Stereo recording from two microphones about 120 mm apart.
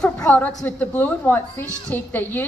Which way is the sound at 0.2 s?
15° left (ahead or behind).